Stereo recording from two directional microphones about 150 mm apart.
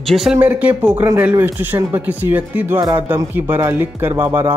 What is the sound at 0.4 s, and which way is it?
Speech, 10° right (ahead or behind).